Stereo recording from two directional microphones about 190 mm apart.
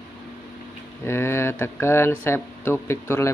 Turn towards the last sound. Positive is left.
turn(degrees=15)  # may be behind; listen again after turning